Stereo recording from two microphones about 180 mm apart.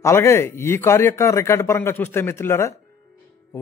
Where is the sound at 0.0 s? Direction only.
15° left (ahead or behind).